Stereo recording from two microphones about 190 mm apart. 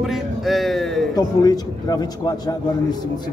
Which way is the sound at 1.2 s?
20° left (ahead or behind).